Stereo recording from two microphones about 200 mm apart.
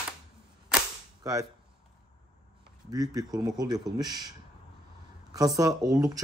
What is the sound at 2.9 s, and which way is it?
Speech, 20° right (ahead or behind).